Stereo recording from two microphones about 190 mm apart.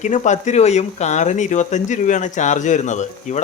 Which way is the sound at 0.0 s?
40° left (ahead or behind).